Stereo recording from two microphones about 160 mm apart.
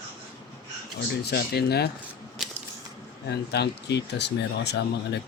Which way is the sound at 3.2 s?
90° left.